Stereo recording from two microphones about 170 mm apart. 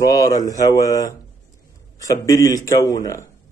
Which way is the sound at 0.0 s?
20° left (ahead or behind).